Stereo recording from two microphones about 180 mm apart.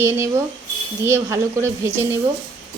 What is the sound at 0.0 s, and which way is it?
A woman's voice, 15° right (ahead or behind).